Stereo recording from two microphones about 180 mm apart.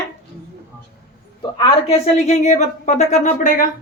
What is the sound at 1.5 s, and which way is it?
A woman's voice, 35° left (ahead or behind).